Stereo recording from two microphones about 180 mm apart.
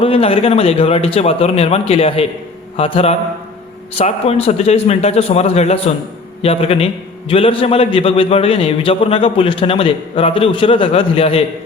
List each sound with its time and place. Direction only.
0.0 s a man's voice: 30° left (ahead or behind)